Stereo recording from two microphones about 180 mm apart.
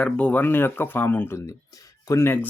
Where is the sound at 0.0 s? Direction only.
10° left (ahead or behind).